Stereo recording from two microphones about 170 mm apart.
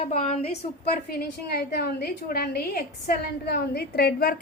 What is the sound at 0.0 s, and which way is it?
Speech, 40° left (ahead or behind).